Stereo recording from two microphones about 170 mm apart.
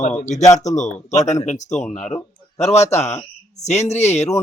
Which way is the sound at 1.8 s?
Centre (ahead or behind).